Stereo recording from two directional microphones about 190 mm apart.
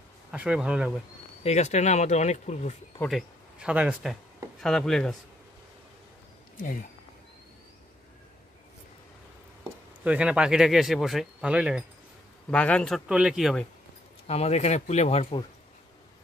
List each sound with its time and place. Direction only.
0.3 s speech: 5° right (ahead or behind)
1.4 s speech: 35° left (ahead or behind)
3.0 s speech: centre (ahead or behind)
6.6 s speech: 45° left (ahead or behind)
10.0 s speech: 5° right (ahead or behind)
12.4 s speech: 5° left (ahead or behind)
14.2 s speech: 35° left (ahead or behind)